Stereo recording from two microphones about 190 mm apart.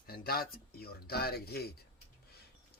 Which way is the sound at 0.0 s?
55° left (ahead or behind).